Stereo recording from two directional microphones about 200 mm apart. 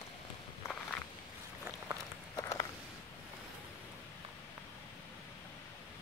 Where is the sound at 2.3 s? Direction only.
15° left (ahead or behind).